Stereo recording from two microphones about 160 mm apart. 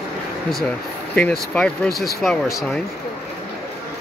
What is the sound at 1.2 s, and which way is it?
Speech, 5° left (ahead or behind).